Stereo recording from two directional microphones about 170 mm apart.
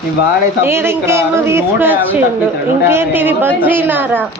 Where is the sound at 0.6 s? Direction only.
15° right (ahead or behind).